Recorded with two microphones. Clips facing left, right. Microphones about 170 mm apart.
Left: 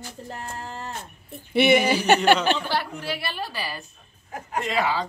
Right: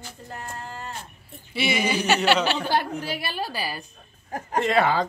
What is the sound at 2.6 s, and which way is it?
A man's voice, 45° right (ahead or behind).